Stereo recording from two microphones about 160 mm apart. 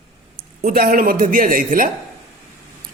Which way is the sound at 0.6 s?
70° right (ahead or behind).